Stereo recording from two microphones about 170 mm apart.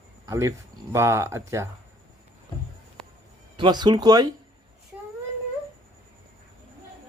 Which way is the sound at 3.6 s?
25° right (ahead or behind).